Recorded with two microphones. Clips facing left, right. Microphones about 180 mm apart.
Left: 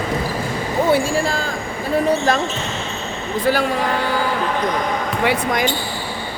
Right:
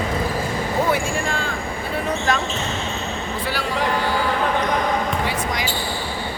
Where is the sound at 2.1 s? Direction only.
35° left (ahead or behind).